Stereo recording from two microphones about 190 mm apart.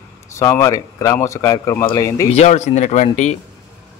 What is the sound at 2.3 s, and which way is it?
Speech, 35° left (ahead or behind).